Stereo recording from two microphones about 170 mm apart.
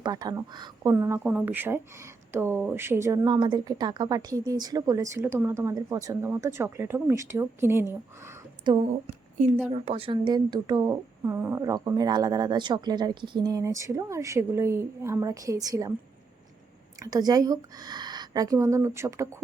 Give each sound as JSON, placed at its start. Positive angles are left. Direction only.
{"t": 0.0, "sound": "speech", "side_deg": -25}
{"t": 8.7, "sound": "speech", "side_deg": -25}
{"t": 17.0, "sound": "speech", "side_deg": -20}